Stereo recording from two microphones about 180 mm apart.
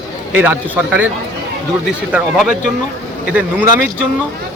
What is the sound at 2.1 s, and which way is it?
Speech, 5° right (ahead or behind).